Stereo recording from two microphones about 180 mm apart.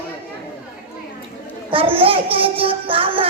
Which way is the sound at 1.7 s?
30° right (ahead or behind).